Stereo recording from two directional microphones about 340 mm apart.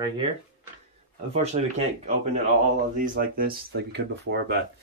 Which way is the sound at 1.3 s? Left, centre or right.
Centre.